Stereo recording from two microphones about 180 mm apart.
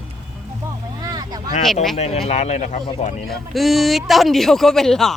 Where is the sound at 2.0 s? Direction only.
35° left (ahead or behind).